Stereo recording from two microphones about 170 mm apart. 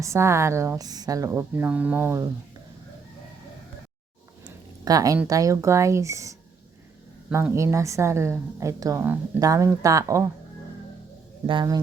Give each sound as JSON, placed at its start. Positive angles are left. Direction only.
{"t": 0.0, "sound": "a woman's voice", "side_deg": -15}
{"t": 4.9, "sound": "a woman's voice", "side_deg": -20}
{"t": 7.3, "sound": "speech", "side_deg": -5}
{"t": 7.5, "sound": "a woman's voice", "side_deg": -15}
{"t": 11.4, "sound": "speech", "side_deg": -25}